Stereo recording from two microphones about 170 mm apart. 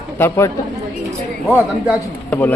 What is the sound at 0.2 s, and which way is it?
Speech, 15° left (ahead or behind).